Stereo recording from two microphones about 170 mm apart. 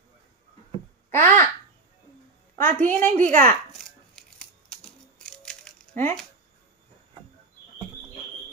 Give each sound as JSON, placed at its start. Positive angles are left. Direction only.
{"t": 1.1, "sound": "a woman's voice", "side_deg": 15}
{"t": 2.6, "sound": "a woman's voice", "side_deg": 10}
{"t": 3.1, "sound": "a woman's voice", "side_deg": -50}
{"t": 3.7, "sound": "scissors", "side_deg": 5}